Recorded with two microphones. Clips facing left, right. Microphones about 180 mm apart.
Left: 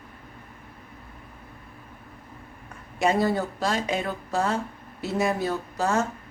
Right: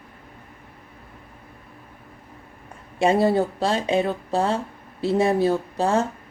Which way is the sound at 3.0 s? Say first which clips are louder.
Right 4 dB; 30° right (ahead or behind).